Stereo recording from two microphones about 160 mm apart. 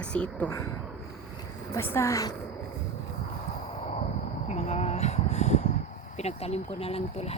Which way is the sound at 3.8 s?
45° left (ahead or behind).